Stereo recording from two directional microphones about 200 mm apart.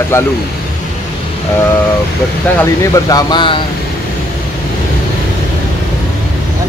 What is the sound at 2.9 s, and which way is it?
Speech, 20° left (ahead or behind).